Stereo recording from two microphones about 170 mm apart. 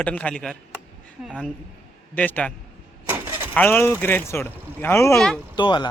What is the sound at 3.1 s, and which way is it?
Keys jangling, 15° right (ahead or behind).